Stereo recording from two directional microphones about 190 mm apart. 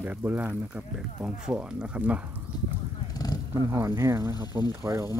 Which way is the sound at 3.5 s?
15° right (ahead or behind).